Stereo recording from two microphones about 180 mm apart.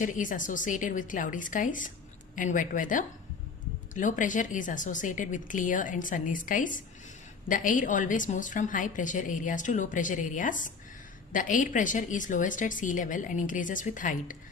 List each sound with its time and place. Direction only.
0.0 s a woman's voice: 45° left (ahead or behind)